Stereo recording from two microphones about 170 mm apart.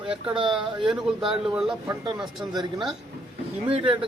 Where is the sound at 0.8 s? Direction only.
5° right (ahead or behind).